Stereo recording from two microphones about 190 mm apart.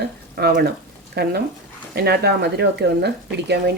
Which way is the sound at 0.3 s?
55° right (ahead or behind).